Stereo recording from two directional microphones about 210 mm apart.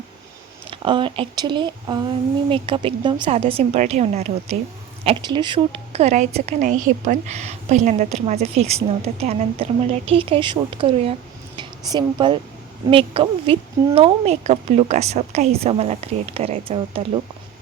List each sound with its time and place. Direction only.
0.7 s a woman's voice: 25° right (ahead or behind)